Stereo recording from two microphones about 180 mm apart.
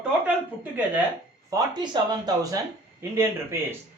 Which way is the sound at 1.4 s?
20° right (ahead or behind).